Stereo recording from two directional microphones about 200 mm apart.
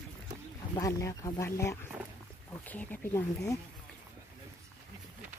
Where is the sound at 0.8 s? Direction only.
15° left (ahead or behind).